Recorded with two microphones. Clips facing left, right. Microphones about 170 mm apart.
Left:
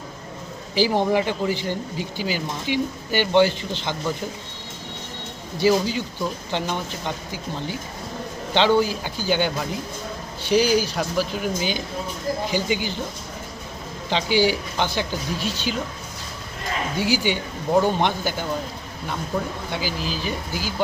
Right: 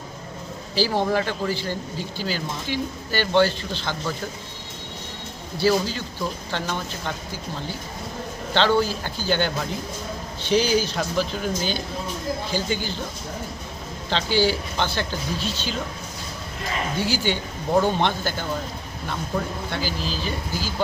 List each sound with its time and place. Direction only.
0.8 s speech: 15° left (ahead or behind)
5.6 s speech: 15° left (ahead or behind)
8.5 s speech: 15° left (ahead or behind)
14.1 s speech: 15° left (ahead or behind)
17.0 s speech: 15° left (ahead or behind)
19.7 s speech: 10° left (ahead or behind)